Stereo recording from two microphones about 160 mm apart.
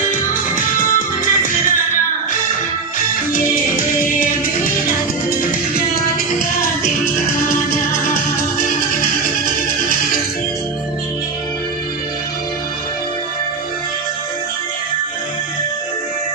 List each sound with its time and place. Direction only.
0.3 s music: 55° left (ahead or behind)